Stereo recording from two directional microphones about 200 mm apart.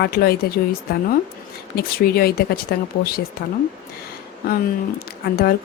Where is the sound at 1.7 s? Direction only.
50° left (ahead or behind).